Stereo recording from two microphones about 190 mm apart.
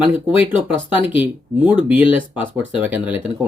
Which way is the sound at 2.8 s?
10° right (ahead or behind).